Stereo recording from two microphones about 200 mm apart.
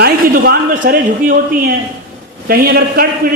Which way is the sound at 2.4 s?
50° right (ahead or behind).